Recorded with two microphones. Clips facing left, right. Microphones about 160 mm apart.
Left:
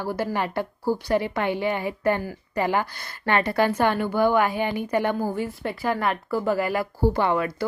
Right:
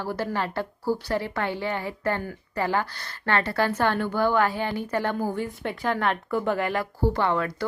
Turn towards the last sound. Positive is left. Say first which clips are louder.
# left 2 dB
turn(degrees=10)  # may be behind; listen again after turning